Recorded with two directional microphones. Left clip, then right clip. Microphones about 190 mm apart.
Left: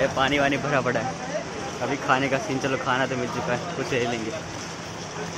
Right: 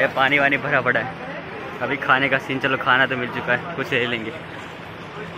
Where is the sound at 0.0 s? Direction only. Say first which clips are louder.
Right 4 dB; 5° left (ahead or behind).